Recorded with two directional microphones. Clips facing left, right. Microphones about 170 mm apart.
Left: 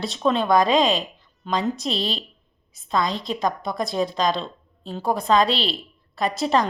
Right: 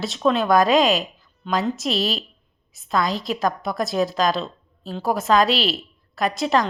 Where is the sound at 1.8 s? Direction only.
30° left (ahead or behind).